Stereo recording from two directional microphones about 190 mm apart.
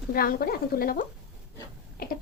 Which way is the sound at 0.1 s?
50° left (ahead or behind).